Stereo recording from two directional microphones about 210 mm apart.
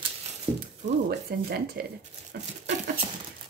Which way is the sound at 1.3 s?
50° right (ahead or behind).